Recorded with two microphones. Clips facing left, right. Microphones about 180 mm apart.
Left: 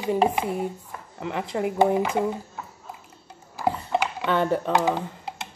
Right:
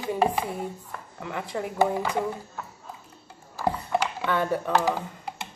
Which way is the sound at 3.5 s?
20° left (ahead or behind).